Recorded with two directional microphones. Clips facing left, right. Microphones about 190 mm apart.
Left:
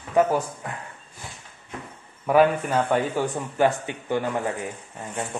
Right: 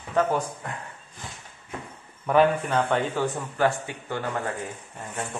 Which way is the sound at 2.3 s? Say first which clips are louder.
Left 2 dB; 5° left (ahead or behind).